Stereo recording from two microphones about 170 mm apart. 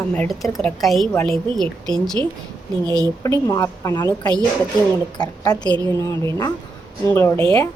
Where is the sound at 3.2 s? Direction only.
20° left (ahead or behind).